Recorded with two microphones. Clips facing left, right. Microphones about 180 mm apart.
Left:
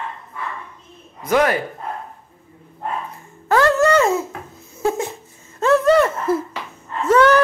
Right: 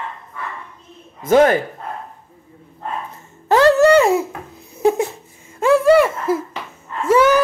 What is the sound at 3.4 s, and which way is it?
Babbling, 20° right (ahead or behind).